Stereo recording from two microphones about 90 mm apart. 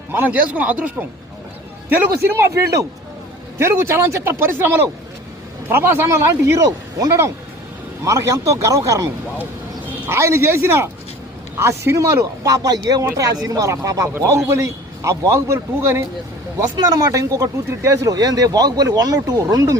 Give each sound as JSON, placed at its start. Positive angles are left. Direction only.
{"t": 0.1, "sound": "speech", "side_deg": -20}
{"t": 1.9, "sound": "speech", "side_deg": -30}
{"t": 10.1, "sound": "speech", "side_deg": -30}
{"t": 16.7, "sound": "speech", "side_deg": -45}